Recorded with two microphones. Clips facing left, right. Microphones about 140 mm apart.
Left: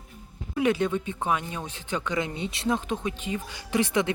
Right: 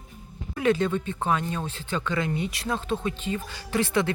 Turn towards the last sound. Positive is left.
turn(degrees=15)  # may be behind; listen again after turning